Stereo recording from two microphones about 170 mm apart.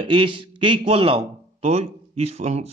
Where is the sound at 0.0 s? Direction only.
30° right (ahead or behind).